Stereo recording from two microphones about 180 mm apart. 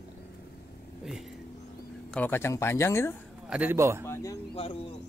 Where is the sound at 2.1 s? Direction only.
10° left (ahead or behind).